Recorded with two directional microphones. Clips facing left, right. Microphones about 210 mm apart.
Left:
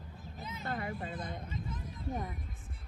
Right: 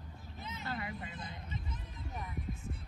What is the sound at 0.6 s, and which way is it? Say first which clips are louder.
Vehicle: left 4 dB; 50° left (ahead or behind).